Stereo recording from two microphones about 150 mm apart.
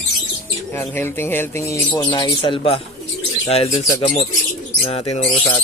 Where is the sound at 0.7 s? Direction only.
15° left (ahead or behind).